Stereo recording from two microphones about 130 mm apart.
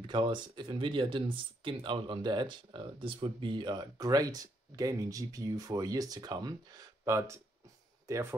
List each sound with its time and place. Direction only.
0.0 s speech: 40° right (ahead or behind); by 8.4 s 20° right (ahead or behind)